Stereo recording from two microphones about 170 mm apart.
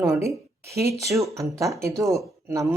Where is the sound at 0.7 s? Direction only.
15° right (ahead or behind).